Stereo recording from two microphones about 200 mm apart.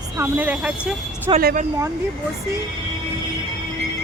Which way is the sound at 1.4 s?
45° right (ahead or behind).